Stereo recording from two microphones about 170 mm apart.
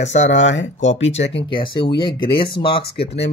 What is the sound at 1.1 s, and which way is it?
Speech, 90° left.